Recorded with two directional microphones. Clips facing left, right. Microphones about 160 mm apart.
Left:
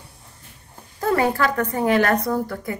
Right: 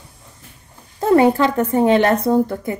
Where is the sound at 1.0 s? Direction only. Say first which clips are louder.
Right 7 dB; 25° right (ahead or behind).